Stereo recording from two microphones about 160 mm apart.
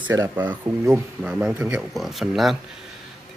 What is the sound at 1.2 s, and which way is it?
Speech, 10° right (ahead or behind).